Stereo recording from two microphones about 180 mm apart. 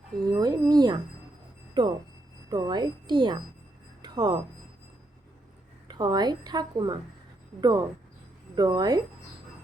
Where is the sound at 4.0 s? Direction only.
25° right (ahead or behind).